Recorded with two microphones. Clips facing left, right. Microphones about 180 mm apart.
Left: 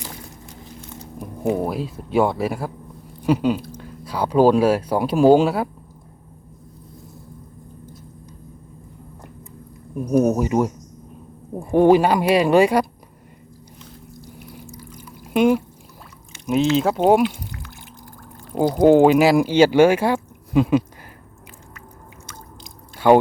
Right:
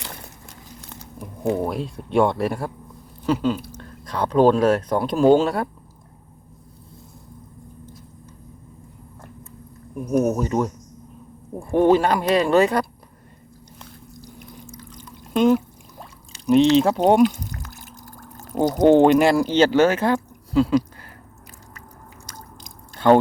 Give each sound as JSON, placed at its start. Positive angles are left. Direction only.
{"t": 1.5, "sound": "speech", "side_deg": 5}
{"t": 3.2, "sound": "speech", "side_deg": 15}
{"t": 9.9, "sound": "speech", "side_deg": 20}
{"t": 11.7, "sound": "speech", "side_deg": 10}
{"t": 14.2, "sound": "a sound", "side_deg": 10}
{"t": 16.7, "sound": "speech", "side_deg": 0}
{"t": 17.2, "sound": "pour", "side_deg": -40}
{"t": 18.5, "sound": "speech", "side_deg": 5}
{"t": 23.0, "sound": "speech", "side_deg": 5}